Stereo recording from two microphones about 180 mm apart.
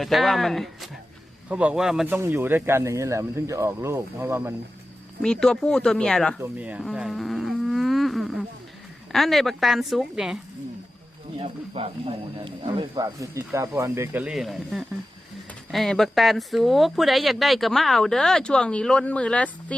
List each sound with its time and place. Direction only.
0.0 s speech: centre (ahead or behind)
5.2 s speech: 5° left (ahead or behind)
6.4 s livestock: 10° right (ahead or behind)
9.1 s speech: centre (ahead or behind)
11.3 s speech: 35° right (ahead or behind); by 19.7 s 5° left (ahead or behind)